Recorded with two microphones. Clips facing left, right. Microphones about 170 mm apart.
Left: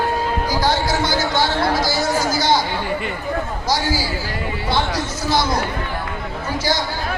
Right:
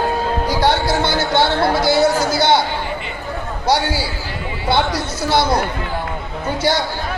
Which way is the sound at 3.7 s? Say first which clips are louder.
Right 4 dB; 65° right (ahead or behind).